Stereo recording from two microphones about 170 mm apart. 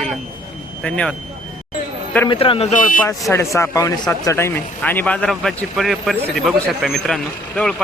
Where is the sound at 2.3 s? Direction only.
30° left (ahead or behind).